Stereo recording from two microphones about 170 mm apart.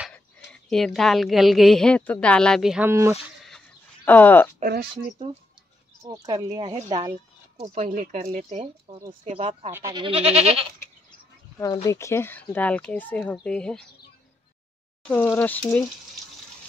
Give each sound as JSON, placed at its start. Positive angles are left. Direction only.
{"t": 0.1, "sound": "a woman's voice", "side_deg": 5}
{"t": 2.9, "sound": "speech", "side_deg": -15}
{"t": 3.4, "sound": "a sound", "side_deg": 5}
{"t": 4.9, "sound": "speech", "side_deg": -25}
{"t": 9.7, "sound": "speech", "side_deg": -15}
{"t": 10.0, "sound": "speech", "side_deg": -35}
{"t": 11.6, "sound": "speech", "side_deg": 20}
{"t": 15.0, "sound": "speech", "side_deg": 10}